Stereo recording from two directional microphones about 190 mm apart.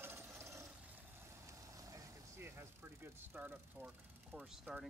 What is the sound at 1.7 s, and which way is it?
Speech, 15° right (ahead or behind).